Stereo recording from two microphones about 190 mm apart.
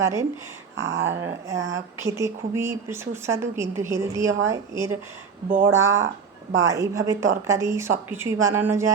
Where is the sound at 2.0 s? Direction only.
15° right (ahead or behind).